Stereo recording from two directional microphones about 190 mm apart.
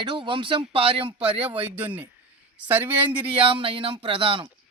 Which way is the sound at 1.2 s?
10° right (ahead or behind).